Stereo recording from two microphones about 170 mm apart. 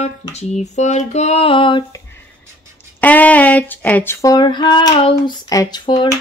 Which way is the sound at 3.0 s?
10° left (ahead or behind).